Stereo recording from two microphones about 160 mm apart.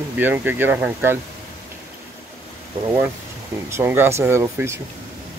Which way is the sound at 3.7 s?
15° right (ahead or behind).